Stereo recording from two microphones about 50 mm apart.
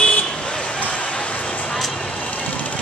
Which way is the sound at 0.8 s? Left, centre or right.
Left.